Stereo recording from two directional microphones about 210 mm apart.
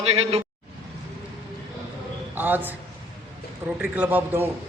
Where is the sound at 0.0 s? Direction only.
30° right (ahead or behind).